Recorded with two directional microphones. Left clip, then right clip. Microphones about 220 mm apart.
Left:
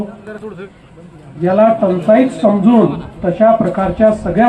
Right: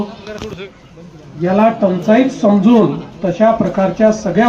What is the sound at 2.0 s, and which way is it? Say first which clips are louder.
A man's voice: left 2 dB; 40° right (ahead or behind).